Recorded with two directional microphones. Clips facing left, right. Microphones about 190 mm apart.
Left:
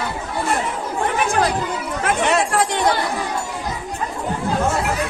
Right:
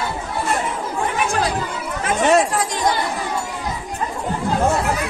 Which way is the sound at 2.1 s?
65° left (ahead or behind).